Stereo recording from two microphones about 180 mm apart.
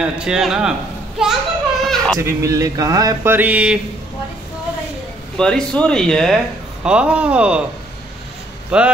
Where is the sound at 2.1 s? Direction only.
15° right (ahead or behind).